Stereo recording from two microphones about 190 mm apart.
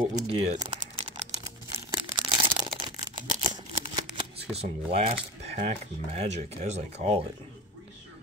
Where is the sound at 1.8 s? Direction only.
25° right (ahead or behind).